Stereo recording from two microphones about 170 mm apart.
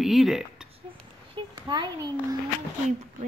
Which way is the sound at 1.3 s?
25° right (ahead or behind).